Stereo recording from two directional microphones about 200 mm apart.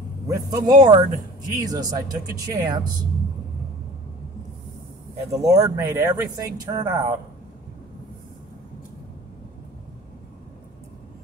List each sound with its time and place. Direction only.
0.3 s speech: 20° right (ahead or behind)
5.3 s speech: 15° right (ahead or behind)